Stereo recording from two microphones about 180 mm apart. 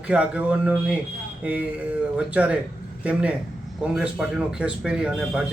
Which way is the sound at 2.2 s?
10° right (ahead or behind).